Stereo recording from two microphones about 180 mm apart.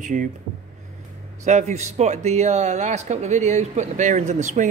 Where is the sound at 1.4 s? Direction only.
40° right (ahead or behind).